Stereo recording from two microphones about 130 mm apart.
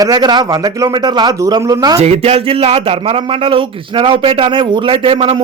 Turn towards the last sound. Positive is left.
turn(degrees=-45)  # may be behind; listen again after turning